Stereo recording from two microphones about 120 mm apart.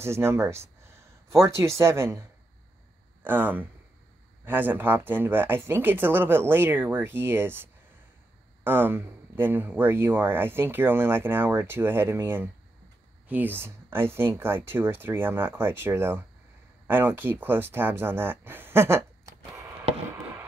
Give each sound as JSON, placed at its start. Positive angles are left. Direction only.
{"t": 0.0, "sound": "speech", "side_deg": -20}